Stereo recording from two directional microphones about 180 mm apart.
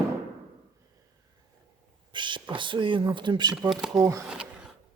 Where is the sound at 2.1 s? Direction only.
25° right (ahead or behind).